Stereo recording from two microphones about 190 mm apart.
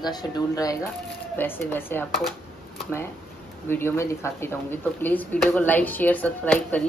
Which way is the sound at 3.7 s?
10° left (ahead or behind).